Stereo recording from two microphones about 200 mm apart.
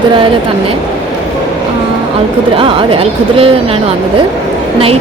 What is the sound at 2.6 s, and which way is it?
Speech, 25° right (ahead or behind).